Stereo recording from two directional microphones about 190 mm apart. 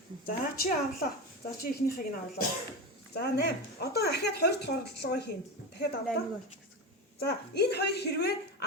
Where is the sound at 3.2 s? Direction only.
55° left (ahead or behind).